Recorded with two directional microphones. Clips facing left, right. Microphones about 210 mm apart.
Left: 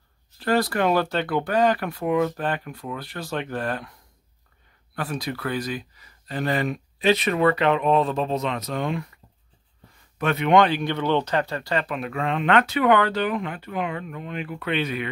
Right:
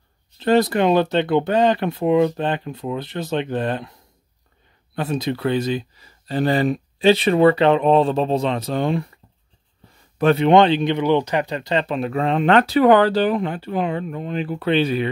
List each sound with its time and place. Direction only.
0.4 s speech: 20° right (ahead or behind)
10.1 s speech: 30° right (ahead or behind)